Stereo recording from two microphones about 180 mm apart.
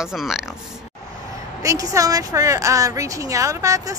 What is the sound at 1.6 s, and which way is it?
A woman's voice, 20° right (ahead or behind).